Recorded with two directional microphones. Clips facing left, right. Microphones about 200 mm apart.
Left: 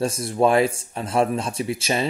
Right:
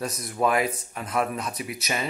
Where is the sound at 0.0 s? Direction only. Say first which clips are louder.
Left 6 dB; 30° left (ahead or behind).